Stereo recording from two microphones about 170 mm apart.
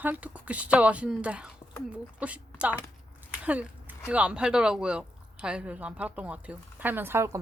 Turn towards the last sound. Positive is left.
turn(degrees=-15)  # may be behind; listen again after turning